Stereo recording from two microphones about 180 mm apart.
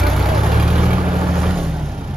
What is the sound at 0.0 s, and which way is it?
Vehicle, centre (ahead or behind).